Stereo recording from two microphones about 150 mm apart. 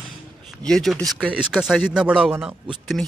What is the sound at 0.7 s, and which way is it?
Speech, 5° left (ahead or behind).